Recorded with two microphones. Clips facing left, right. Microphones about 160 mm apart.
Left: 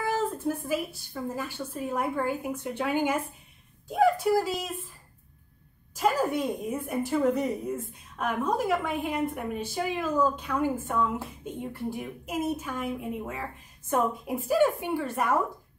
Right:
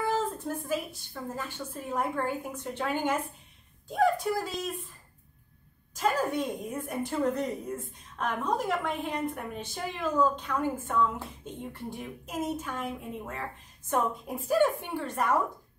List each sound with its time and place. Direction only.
0.0 s a woman's voice: 10° left (ahead or behind)
5.9 s a woman's voice: 10° left (ahead or behind)